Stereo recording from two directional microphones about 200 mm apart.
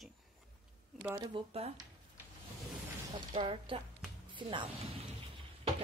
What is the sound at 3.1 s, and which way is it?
A woman's voice, 25° right (ahead or behind).